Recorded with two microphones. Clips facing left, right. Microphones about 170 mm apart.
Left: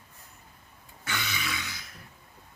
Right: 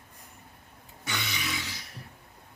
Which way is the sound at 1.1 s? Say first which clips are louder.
Even; 20° right (ahead or behind).